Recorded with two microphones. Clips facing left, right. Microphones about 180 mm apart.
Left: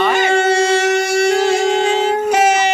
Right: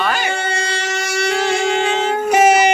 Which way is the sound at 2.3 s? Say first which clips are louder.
Right 4 dB; 15° right (ahead or behind).